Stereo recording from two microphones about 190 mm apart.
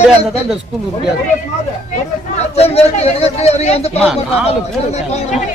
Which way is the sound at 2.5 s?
35° left (ahead or behind).